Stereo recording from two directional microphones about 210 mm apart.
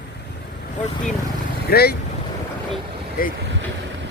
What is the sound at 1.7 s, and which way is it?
Speech, 50° left (ahead or behind).